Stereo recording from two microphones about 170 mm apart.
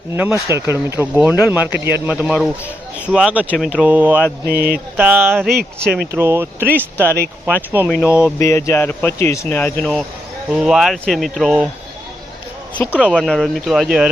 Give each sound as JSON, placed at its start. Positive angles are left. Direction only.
{"t": 0.1, "sound": "speech", "side_deg": -10}
{"t": 4.4, "sound": "speech", "side_deg": -60}
{"t": 4.9, "sound": "speech", "side_deg": -10}
{"t": 8.4, "sound": "speech", "side_deg": 15}
{"t": 13.0, "sound": "speech", "side_deg": 5}